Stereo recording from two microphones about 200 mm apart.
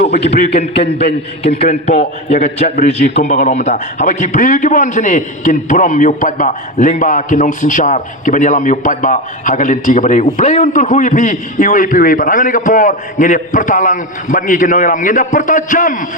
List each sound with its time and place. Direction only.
0.0 s a man's voice: 30° left (ahead or behind)
0.8 s a man's voice: 50° left (ahead or behind)
2.0 s a man's voice: 30° left (ahead or behind)